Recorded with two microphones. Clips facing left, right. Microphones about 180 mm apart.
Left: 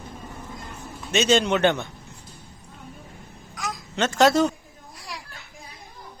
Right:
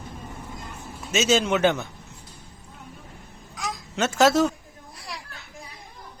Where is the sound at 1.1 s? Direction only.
5° right (ahead or behind).